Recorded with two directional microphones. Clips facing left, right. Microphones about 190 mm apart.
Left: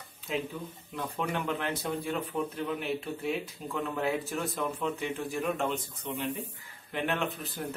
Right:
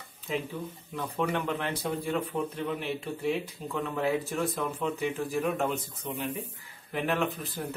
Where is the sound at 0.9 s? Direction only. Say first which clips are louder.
Right 3 dB; centre (ahead or behind).